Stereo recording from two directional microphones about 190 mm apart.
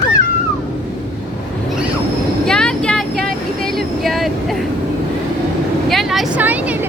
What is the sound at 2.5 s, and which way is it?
Vehicle, 5° left (ahead or behind).